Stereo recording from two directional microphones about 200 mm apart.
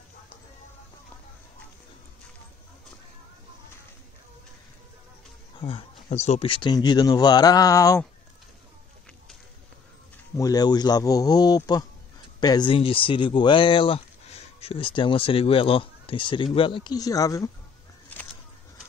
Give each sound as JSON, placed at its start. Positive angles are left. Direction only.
{"t": 5.6, "sound": "speech", "side_deg": 30}
{"t": 10.3, "sound": "speech", "side_deg": 15}